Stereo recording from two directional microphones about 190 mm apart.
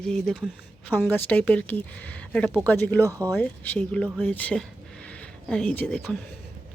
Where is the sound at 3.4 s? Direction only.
10° left (ahead or behind).